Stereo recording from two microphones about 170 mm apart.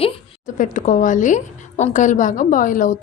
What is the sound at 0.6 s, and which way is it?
A woman's voice, 50° left (ahead or behind).